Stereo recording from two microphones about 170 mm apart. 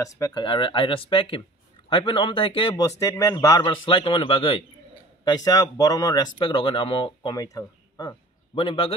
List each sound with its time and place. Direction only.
0.0 s speech: 25° left (ahead or behind)
3.0 s speech: 15° left (ahead or behind)